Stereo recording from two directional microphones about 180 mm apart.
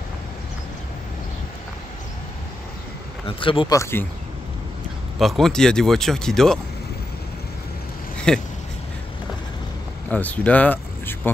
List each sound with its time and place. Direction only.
3.3 s speech: 30° left (ahead or behind)
3.7 s speech: 15° left (ahead or behind)
5.2 s speech: centre (ahead or behind)
8.3 s speech: 5° left (ahead or behind)
10.0 s speech: 10° left (ahead or behind)